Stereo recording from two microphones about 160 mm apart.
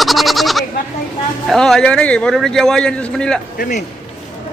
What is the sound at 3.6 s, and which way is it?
Speech, 50° left (ahead or behind).